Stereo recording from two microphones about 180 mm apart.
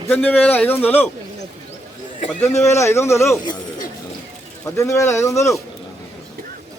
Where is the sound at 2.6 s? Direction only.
15° left (ahead or behind).